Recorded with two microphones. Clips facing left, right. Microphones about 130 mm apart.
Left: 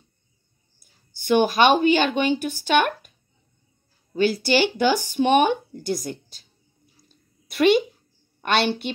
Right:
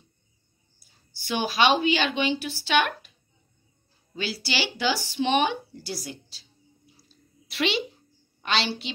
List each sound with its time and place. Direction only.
0.7 s a woman's voice: 50° left (ahead or behind)
4.1 s speech: 50° left (ahead or behind)
7.0 s a sound: 50° left (ahead or behind)
8.4 s speech: 55° left (ahead or behind)